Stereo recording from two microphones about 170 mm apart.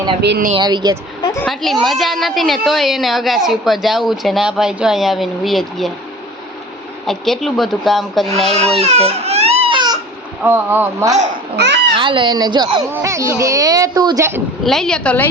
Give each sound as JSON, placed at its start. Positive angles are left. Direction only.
{"t": 0.2, "sound": "speech", "side_deg": -75}
{"t": 0.5, "sound": "speech", "side_deg": -25}
{"t": 1.2, "sound": "a sound", "side_deg": 20}
{"t": 1.5, "sound": "a woman's voice", "side_deg": 0}
{"t": 7.1, "sound": "a woman's voice", "side_deg": 0}
{"t": 8.4, "sound": "speech", "side_deg": -35}
{"t": 8.8, "sound": "baby cry", "side_deg": -35}
{"t": 10.4, "sound": "speech", "side_deg": -15}
{"t": 11.5, "sound": "speech", "side_deg": -90}
{"t": 11.9, "sound": "speech", "side_deg": -30}
{"t": 14.6, "sound": "a woman's voice", "side_deg": 0}